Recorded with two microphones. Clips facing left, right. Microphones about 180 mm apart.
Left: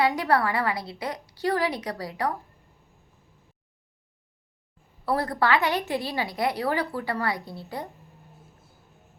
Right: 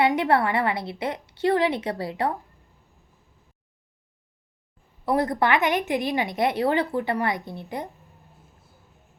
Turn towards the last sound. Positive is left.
turn(degrees=-20)  # may be behind; listen again after turning